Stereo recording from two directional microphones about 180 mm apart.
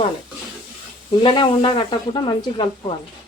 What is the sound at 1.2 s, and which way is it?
Speech, 25° left (ahead or behind).